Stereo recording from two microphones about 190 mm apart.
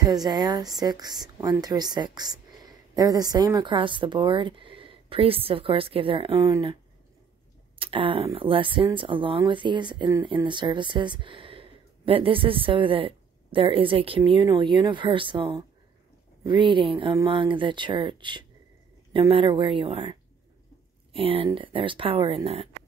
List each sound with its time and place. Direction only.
0.0 s speech: 20° right (ahead or behind)
7.8 s speech: 30° right (ahead or behind)